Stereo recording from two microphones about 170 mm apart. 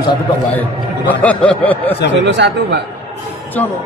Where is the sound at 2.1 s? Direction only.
90° right.